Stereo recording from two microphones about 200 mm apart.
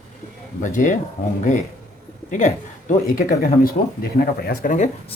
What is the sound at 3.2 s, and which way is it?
Speech, 45° left (ahead or behind).